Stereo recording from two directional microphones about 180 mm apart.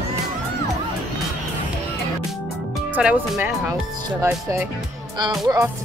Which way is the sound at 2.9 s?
5° right (ahead or behind).